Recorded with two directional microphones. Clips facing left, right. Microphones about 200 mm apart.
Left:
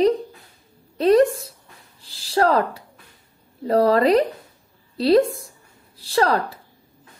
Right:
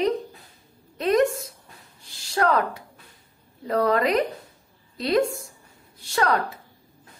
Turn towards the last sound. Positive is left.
turn(degrees=30)  # may be behind; listen again after turning